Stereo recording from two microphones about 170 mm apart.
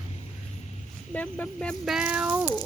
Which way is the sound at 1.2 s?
5° left (ahead or behind).